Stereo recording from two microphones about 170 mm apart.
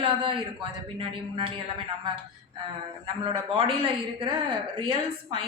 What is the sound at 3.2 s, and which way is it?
A woman's voice, 30° right (ahead or behind).